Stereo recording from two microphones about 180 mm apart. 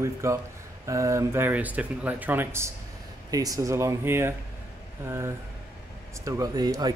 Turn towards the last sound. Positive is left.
turn(degrees=-20)  # may be behind; listen again after turning